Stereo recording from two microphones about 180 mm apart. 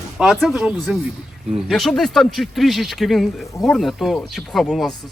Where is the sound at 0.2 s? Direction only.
5° right (ahead or behind).